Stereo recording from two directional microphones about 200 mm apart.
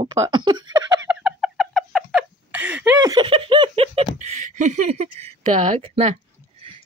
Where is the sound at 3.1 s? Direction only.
25° right (ahead or behind).